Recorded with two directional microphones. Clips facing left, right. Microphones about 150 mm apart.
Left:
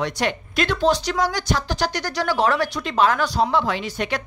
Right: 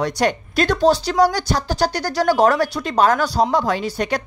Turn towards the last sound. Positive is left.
turn(degrees=-35)  # may be behind; listen again after turning